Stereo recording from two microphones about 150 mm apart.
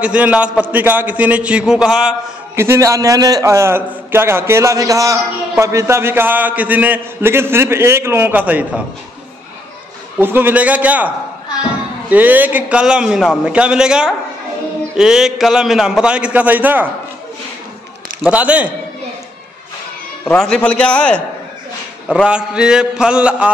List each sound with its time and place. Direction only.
0.0 s a man's voice: 10° right (ahead or behind)
2.5 s a man's voice: 15° right (ahead or behind)
10.2 s a man's voice: 15° right (ahead or behind)
12.1 s a man's voice: 10° right (ahead or behind)
18.2 s a man's voice: 10° right (ahead or behind)
20.2 s a man's voice: 5° left (ahead or behind)
22.0 s a man's voice: 5° right (ahead or behind)